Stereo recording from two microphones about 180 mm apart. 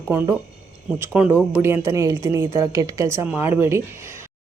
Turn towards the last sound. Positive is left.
turn(degrees=-15)  # may be behind; listen again after turning